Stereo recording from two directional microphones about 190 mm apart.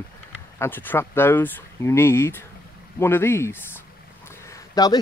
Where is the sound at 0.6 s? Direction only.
10° left (ahead or behind).